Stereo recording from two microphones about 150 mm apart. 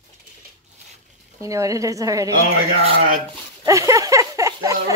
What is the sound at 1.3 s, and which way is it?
Speech, 20° right (ahead or behind).